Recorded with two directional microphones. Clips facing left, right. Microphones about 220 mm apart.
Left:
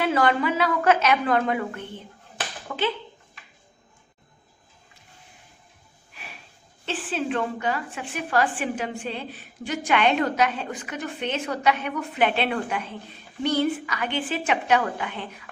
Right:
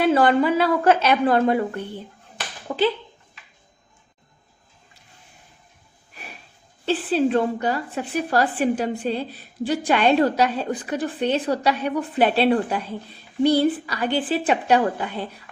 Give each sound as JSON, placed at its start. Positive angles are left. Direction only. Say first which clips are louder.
{"t": 0.0, "sound": "a woman's voice", "louder": "right 5 dB", "side_deg": -30}
{"t": 6.8, "sound": "a woman's voice", "louder": "right 8 dB", "side_deg": -35}